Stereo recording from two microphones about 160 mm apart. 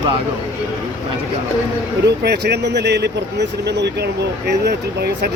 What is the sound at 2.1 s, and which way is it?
Speech, 90° right.